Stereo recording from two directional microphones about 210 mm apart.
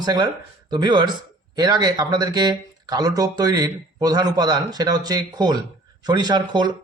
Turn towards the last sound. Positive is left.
turn(degrees=-20)  # may be behind; listen again after turning